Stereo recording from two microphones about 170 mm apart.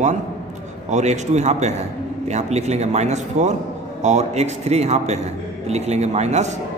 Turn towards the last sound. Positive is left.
turn(degrees=-40)  # may be behind; listen again after turning